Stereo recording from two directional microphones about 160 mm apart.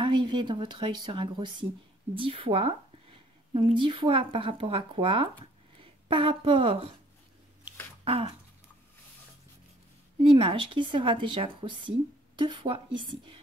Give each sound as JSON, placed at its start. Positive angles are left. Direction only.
{"t": 0.0, "sound": "a woman's voice", "side_deg": -30}
{"t": 8.0, "sound": "a sound", "side_deg": -35}
{"t": 10.3, "sound": "a woman's voice", "side_deg": -30}